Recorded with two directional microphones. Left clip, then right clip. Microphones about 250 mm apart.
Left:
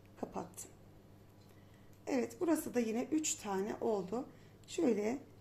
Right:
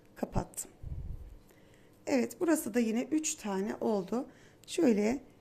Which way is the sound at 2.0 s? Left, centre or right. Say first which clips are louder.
Right 5 dB; right.